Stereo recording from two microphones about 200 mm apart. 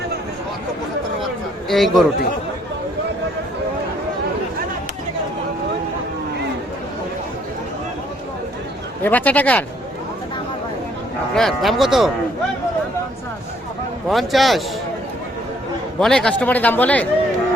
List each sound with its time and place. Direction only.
1.7 s speech: centre (ahead or behind)
9.0 s speech: 10° left (ahead or behind)
11.3 s speech: centre (ahead or behind)
14.1 s speech: centre (ahead or behind)
16.0 s speech: 5° left (ahead or behind)